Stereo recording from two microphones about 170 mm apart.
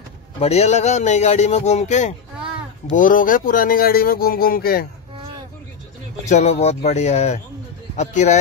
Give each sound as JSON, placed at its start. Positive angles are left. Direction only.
{"t": 0.4, "sound": "speech", "side_deg": 40}
{"t": 6.2, "sound": "speech", "side_deg": 40}